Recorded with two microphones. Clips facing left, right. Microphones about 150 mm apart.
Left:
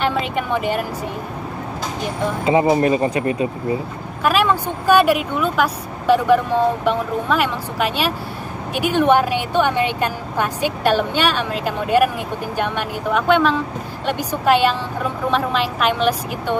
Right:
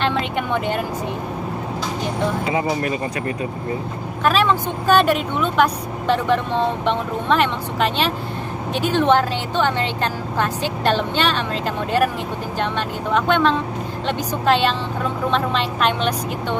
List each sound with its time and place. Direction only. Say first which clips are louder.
0.0 s speech: left 1 dB; 5° left (ahead or behind)
2.4 s speech: left 6 dB; 25° left (ahead or behind)
4.2 s speech: even; 10° left (ahead or behind)